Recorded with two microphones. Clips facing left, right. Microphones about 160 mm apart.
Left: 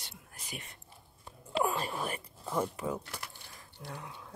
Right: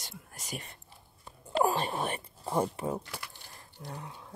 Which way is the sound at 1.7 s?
25° right (ahead or behind).